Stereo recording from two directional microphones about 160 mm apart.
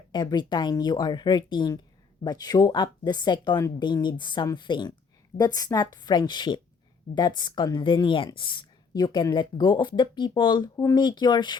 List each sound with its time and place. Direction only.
0.1 s a woman's voice: 25° left (ahead or behind)